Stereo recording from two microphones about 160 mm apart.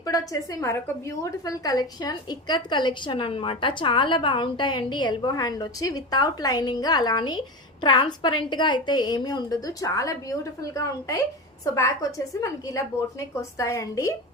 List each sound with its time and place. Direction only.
0.6 s a woman's voice: 15° left (ahead or behind)